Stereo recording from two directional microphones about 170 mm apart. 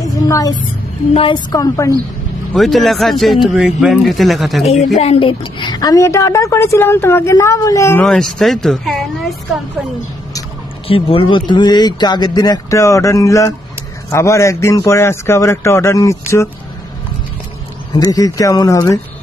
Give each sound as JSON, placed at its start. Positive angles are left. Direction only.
{"t": 0.3, "sound": "a woman's voice", "side_deg": 20}
{"t": 1.5, "sound": "speech", "side_deg": 20}
{"t": 2.5, "sound": "speech", "side_deg": 0}
{"t": 4.9, "sound": "a woman's voice", "side_deg": 35}
{"t": 8.0, "sound": "speech", "side_deg": 5}
{"t": 10.9, "sound": "a woman's voice", "side_deg": 35}
{"t": 17.9, "sound": "speech", "side_deg": 20}